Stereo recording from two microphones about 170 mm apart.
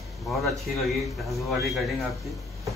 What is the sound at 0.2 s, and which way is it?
A man's voice, centre (ahead or behind).